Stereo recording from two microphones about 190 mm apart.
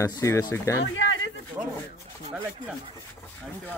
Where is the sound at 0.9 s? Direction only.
80° left.